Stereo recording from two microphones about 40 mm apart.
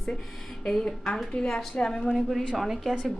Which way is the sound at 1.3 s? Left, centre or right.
Centre.